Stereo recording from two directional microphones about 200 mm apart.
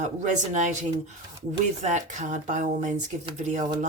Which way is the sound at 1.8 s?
35° right (ahead or behind).